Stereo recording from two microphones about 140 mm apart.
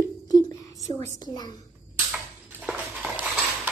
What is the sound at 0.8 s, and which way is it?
Speech, 20° left (ahead or behind).